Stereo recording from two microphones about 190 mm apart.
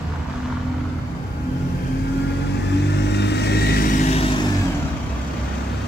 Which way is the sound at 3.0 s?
60° left (ahead or behind).